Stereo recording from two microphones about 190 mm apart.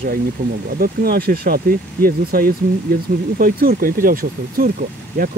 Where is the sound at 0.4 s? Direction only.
50° right (ahead or behind).